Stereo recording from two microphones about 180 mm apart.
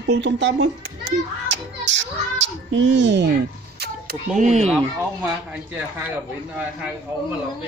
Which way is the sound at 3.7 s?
60° right (ahead or behind).